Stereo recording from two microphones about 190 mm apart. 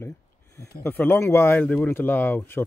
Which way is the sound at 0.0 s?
15° left (ahead or behind).